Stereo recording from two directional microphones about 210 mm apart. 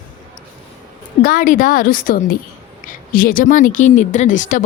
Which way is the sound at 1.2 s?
40° left (ahead or behind).